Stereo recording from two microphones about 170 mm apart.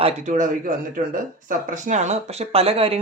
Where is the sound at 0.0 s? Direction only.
45° right (ahead or behind).